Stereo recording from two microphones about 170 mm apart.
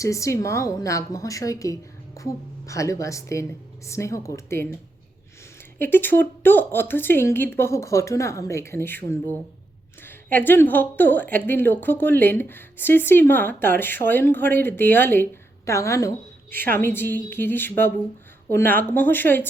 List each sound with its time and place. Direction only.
0.0 s a woman's voice: 20° left (ahead or behind)
5.8 s a woman's voice: 10° left (ahead or behind)